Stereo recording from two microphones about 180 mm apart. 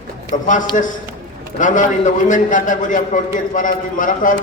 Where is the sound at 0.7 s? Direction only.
45° left (ahead or behind).